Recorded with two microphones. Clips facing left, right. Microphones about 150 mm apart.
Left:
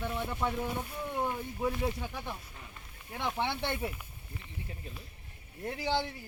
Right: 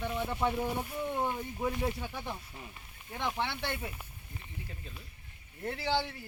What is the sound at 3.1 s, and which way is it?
Speech, centre (ahead or behind).